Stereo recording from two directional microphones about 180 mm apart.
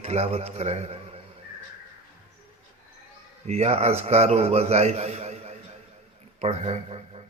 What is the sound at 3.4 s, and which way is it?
A man's voice, 35° right (ahead or behind).